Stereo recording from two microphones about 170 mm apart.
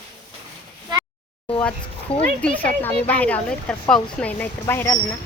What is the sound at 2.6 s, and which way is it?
Speech, 10° left (ahead or behind).